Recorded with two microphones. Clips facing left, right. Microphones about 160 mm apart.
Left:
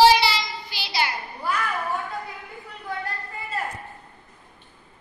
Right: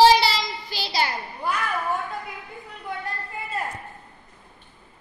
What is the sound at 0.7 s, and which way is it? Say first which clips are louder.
Child singing: right 1 dB; 40° right (ahead or behind).